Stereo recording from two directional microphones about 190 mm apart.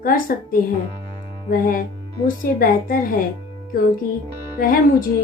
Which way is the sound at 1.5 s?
50° left (ahead or behind).